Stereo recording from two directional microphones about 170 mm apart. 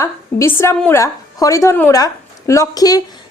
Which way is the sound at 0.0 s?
15° left (ahead or behind).